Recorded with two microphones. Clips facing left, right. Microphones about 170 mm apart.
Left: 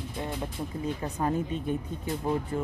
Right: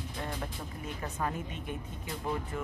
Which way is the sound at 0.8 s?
30° left (ahead or behind).